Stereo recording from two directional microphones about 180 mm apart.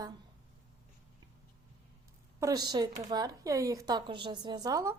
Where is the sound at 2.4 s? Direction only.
20° right (ahead or behind).